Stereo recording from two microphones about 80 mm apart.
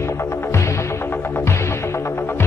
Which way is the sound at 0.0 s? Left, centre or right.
Left.